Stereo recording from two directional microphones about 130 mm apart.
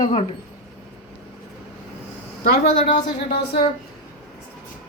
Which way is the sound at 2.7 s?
45° left (ahead or behind).